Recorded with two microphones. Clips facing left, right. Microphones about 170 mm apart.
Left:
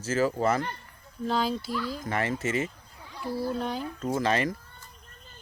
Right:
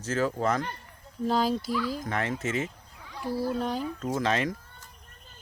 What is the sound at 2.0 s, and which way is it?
Speech, centre (ahead or behind).